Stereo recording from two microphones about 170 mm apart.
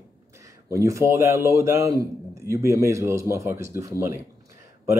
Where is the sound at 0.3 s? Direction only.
20° right (ahead or behind).